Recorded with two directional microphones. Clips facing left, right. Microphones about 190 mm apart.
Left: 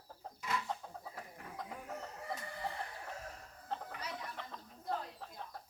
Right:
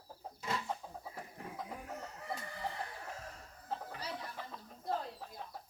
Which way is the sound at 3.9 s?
30° right (ahead or behind).